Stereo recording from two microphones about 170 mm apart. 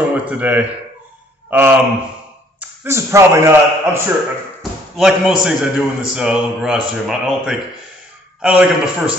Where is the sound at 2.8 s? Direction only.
15° right (ahead or behind).